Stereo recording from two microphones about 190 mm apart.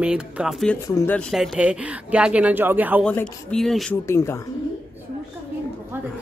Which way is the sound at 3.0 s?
5° left (ahead or behind).